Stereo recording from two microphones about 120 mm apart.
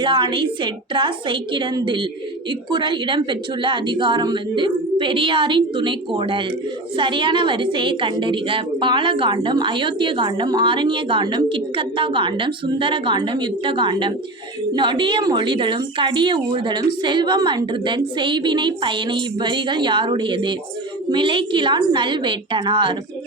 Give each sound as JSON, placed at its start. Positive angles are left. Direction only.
{"t": 0.0, "sound": "a woman's voice", "side_deg": -40}